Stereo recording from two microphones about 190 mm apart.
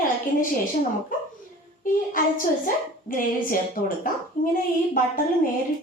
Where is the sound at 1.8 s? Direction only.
45° left (ahead or behind).